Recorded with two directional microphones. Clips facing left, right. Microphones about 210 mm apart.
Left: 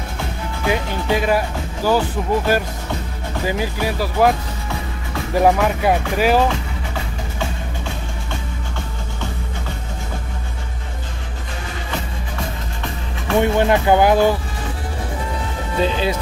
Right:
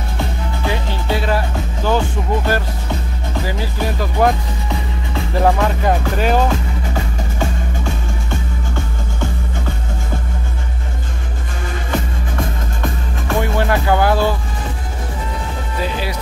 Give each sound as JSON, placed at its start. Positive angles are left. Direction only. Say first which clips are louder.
{"t": 0.7, "sound": "speech", "louder": "left 2 dB", "side_deg": 15}
{"t": 1.9, "sound": "music", "louder": "left 1 dB", "side_deg": 10}
{"t": 5.3, "sound": "music", "louder": "left 1 dB", "side_deg": 10}
{"t": 13.4, "sound": "speech", "louder": "left 3 dB", "side_deg": 20}
{"t": 15.8, "sound": "speech", "louder": "left 4 dB", "side_deg": 25}